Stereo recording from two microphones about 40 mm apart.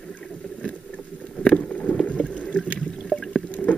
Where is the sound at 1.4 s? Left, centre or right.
Left.